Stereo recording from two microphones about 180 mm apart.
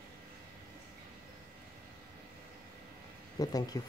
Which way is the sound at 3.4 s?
20° left (ahead or behind).